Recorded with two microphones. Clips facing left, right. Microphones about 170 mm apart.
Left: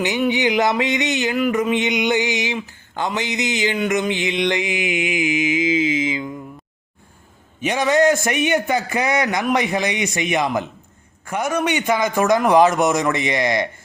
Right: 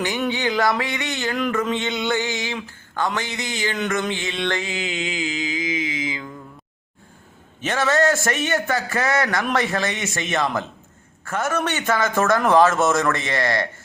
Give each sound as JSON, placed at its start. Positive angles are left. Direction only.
{"t": 0.0, "sound": "a man's voice", "side_deg": 15}
{"t": 2.6, "sound": "a sound", "side_deg": 15}
{"t": 3.2, "sound": "mantra", "side_deg": 15}
{"t": 7.6, "sound": "a man's voice", "side_deg": 15}